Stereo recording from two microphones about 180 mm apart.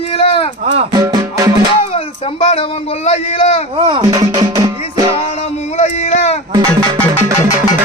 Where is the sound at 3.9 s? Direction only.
20° right (ahead or behind).